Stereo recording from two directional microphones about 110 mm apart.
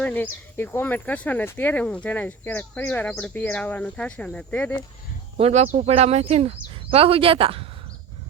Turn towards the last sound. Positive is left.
turn(degrees=-60)  # may be behind; listen again after turning